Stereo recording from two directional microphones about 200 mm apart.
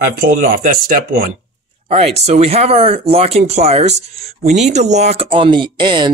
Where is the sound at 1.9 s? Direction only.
30° right (ahead or behind).